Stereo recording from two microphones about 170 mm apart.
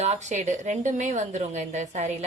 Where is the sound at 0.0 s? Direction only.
40° right (ahead or behind).